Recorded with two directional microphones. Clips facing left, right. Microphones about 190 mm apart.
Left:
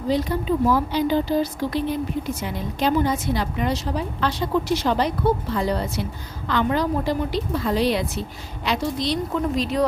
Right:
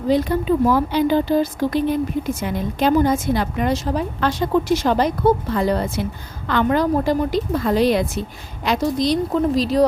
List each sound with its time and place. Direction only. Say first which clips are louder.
0.1 s speech: right 4 dB; 55° right (ahead or behind); by 9.8 s 35° right (ahead or behind)